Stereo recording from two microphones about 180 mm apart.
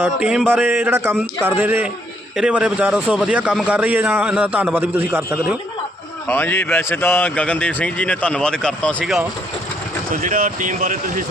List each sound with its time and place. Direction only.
0.0 s a man's voice: 5° right (ahead or behind)
6.2 s speech: 10° left (ahead or behind)
10.1 s speech: 45° right (ahead or behind)